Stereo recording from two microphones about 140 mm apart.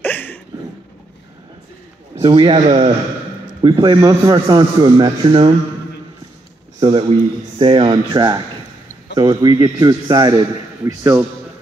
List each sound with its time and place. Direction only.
0.0 s a sound: 15° left (ahead or behind)
2.1 s speech: 35° right (ahead or behind)
6.8 s a man's voice: 40° right (ahead or behind); by 11.2 s 20° right (ahead or behind)